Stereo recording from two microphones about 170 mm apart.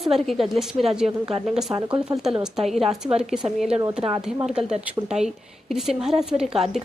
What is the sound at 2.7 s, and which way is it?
A woman's voice, centre (ahead or behind).